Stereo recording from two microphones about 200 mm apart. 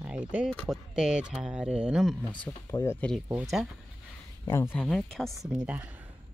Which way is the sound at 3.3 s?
5° right (ahead or behind).